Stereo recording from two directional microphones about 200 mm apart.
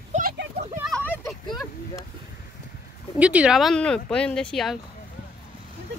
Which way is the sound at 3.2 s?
5° right (ahead or behind).